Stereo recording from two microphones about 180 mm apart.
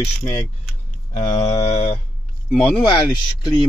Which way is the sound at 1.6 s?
35° left (ahead or behind).